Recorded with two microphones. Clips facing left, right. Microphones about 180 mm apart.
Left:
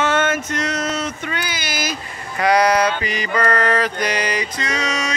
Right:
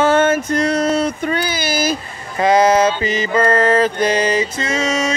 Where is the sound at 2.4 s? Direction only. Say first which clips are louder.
Right 3 dB; 25° right (ahead or behind).